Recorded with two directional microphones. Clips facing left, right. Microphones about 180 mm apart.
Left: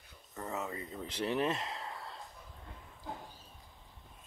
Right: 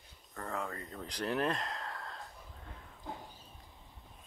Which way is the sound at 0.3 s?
5° left (ahead or behind).